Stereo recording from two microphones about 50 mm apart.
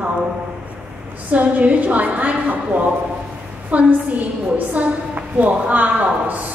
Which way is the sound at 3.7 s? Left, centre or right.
Right.